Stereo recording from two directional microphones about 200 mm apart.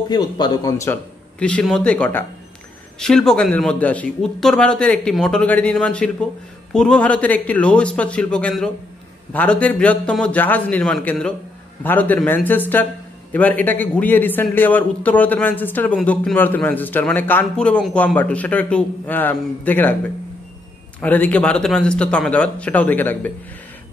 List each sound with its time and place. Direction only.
0.1 s a man's voice: 20° left (ahead or behind)
1.4 s a man's voice: 5° left (ahead or behind)
21.0 s a man's voice: 10° left (ahead or behind)